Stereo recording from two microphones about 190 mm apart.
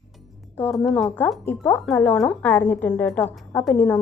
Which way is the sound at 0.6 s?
Centre (ahead or behind).